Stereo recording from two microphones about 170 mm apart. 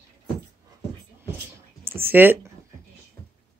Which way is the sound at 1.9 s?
15° right (ahead or behind).